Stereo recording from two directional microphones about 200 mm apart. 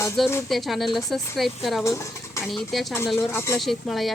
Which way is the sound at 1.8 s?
15° left (ahead or behind).